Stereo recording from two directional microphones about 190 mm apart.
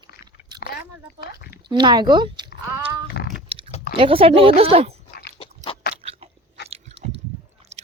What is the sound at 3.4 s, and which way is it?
Chewing, 30° right (ahead or behind).